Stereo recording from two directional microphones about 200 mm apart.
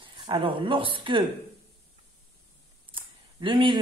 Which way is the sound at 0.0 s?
25° right (ahead or behind).